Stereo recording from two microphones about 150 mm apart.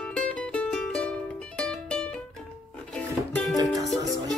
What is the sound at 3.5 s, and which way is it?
Music, 25° right (ahead or behind).